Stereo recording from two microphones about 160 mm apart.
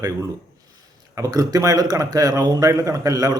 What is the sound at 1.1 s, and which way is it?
A man's voice, 20° right (ahead or behind).